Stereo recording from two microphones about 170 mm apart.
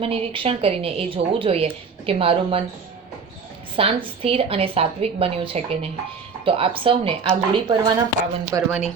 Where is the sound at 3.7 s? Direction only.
35° right (ahead or behind); by 8.7 s 20° right (ahead or behind).